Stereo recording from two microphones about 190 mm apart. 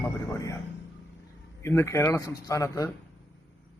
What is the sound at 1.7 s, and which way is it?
A man's voice, 15° left (ahead or behind).